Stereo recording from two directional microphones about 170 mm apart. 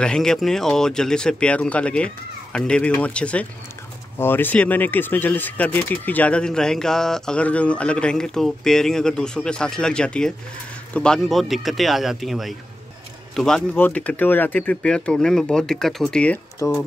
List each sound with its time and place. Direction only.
0.0 s speech: 5° left (ahead or behind)
16.6 s speech: 20° left (ahead or behind)